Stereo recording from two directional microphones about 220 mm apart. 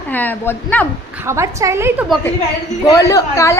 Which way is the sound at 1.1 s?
10° right (ahead or behind).